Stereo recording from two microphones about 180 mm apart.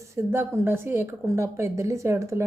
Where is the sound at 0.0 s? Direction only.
15° right (ahead or behind).